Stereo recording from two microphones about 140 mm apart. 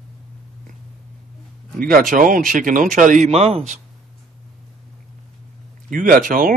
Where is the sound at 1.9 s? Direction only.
75° right (ahead or behind); by 3.8 s 50° right (ahead or behind).